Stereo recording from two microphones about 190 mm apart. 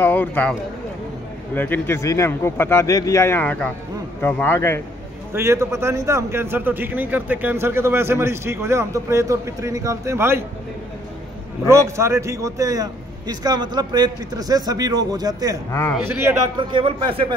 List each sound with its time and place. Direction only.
0.0 s a man's voice: 10° left (ahead or behind)
5.3 s a man's voice: 15° right (ahead or behind)
11.7 s a man's voice: 15° right (ahead or behind)
16.5 s a man's voice: 25° right (ahead or behind)